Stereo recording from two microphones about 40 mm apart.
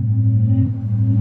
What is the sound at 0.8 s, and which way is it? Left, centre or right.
Music, centre.